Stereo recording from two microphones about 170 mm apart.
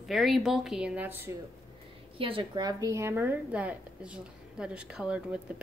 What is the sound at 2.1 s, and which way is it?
A woman's voice, 30° right (ahead or behind).